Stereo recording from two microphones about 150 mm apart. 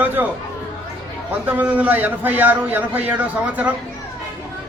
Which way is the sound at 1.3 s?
10° right (ahead or behind).